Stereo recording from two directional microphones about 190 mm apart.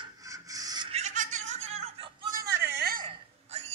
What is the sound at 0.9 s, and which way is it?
Chuckle, 40° right (ahead or behind).